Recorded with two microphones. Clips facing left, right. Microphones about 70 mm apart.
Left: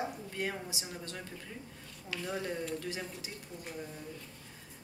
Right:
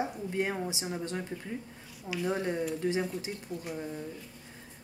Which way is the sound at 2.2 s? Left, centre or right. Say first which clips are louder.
Right 6 dB; centre.